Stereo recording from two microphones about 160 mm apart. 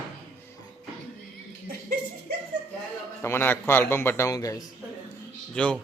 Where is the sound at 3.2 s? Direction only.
15° left (ahead or behind).